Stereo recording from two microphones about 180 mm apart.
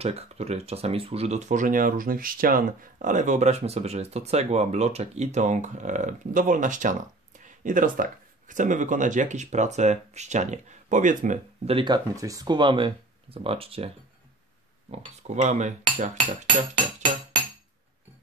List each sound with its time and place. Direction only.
0.0 s speech: 35° right (ahead or behind)
11.7 s speech: 25° right (ahead or behind); by 16.1 s 40° right (ahead or behind)